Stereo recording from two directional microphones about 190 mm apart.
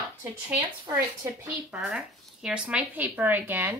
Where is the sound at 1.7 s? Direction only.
5° right (ahead or behind).